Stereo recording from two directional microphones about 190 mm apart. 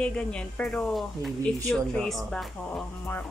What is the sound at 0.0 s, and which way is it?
Speech, 5° left (ahead or behind).